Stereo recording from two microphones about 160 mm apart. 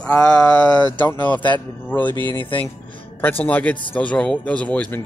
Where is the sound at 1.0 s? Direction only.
10° left (ahead or behind).